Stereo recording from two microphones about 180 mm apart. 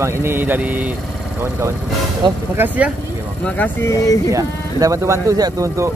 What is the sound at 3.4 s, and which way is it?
Speech, 10° left (ahead or behind).